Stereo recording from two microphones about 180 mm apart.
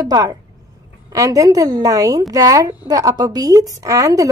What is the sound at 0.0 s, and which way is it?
A woman's voice, 20° right (ahead or behind).